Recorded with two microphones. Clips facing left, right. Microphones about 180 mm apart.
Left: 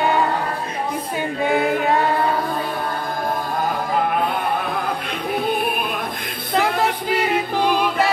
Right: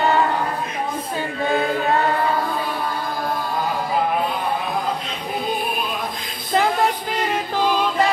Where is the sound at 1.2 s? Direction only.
15° left (ahead or behind).